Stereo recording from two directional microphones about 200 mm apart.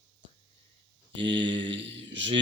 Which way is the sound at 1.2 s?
25° right (ahead or behind).